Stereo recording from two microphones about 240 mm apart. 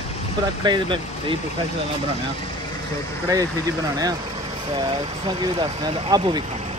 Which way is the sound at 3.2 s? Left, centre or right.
Centre.